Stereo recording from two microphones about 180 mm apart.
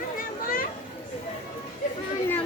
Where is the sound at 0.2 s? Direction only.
50° left (ahead or behind).